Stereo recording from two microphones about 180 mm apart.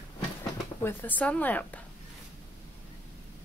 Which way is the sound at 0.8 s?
10° left (ahead or behind).